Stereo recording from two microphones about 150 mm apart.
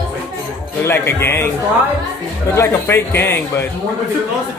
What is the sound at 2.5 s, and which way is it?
A man's voice, 15° left (ahead or behind).